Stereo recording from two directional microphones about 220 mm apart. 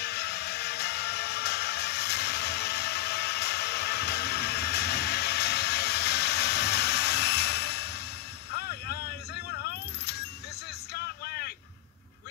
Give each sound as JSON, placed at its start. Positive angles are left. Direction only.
{"t": 0.0, "sound": "music", "side_deg": 50}
{"t": 8.5, "sound": "vehicle", "side_deg": 45}